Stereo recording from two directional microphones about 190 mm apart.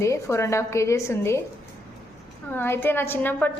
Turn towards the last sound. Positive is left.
turn(degrees=10)  # may be behind; listen again after turning